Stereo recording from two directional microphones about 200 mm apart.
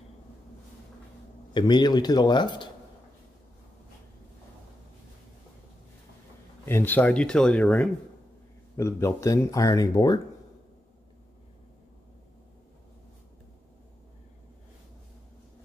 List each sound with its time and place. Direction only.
1.5 s a man's voice: 20° left (ahead or behind)
6.6 s speech: 10° left (ahead or behind)